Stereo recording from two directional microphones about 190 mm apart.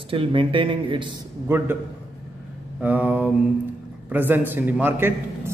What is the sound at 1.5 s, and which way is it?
Speech, 15° right (ahead or behind).